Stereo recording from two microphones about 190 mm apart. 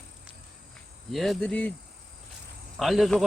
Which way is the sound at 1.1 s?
Centre (ahead or behind).